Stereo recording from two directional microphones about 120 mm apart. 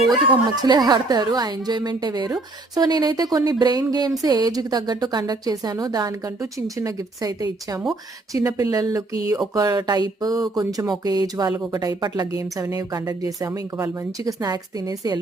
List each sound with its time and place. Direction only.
0.6 s a woman's voice: 35° right (ahead or behind)